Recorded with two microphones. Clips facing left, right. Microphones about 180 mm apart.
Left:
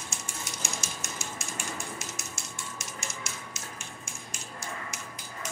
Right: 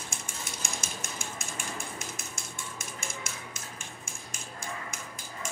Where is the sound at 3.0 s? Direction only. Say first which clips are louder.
Right 1 dB; 55° right (ahead or behind).